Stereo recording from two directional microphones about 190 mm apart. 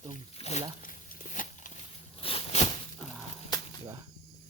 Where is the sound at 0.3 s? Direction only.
35° left (ahead or behind).